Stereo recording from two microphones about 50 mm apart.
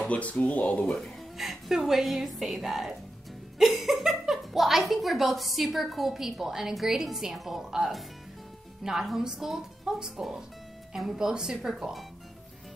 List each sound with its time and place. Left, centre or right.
0.1 s speech: left
1.4 s a woman's voice: centre